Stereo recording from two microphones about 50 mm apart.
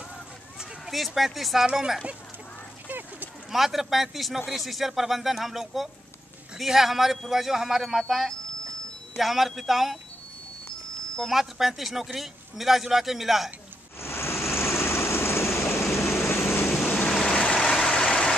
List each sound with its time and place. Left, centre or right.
0.6 s speech: centre
2.9 s a sound: right
3.5 s a man's voice: centre
11.1 s a man's voice: centre
14.0 s vehicle: left
17.2 s vehicle: left